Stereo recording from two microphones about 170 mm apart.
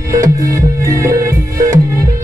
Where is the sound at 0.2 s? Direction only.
20° right (ahead or behind).